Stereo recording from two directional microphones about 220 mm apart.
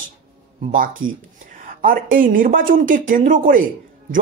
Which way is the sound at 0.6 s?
40° right (ahead or behind).